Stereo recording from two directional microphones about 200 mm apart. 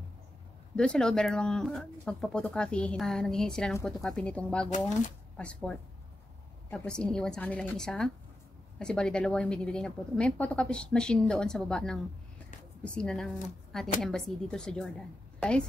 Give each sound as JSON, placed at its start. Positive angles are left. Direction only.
{"t": 0.7, "sound": "a woman's voice", "side_deg": 5}
{"t": 4.7, "sound": "speech", "side_deg": 40}
{"t": 5.4, "sound": "a woman's voice", "side_deg": 5}